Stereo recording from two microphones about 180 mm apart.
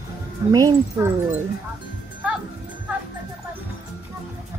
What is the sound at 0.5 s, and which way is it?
Speech, 20° right (ahead or behind).